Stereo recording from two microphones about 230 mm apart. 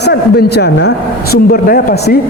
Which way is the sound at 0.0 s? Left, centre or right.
Left.